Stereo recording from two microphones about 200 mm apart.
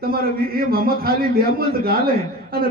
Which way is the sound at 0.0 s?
50° right (ahead or behind).